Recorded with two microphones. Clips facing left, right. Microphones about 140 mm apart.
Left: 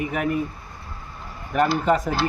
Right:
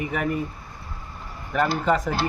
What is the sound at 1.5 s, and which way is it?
Speech, 10° left (ahead or behind).